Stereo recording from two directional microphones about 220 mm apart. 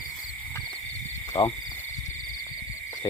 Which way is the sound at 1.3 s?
15° left (ahead or behind).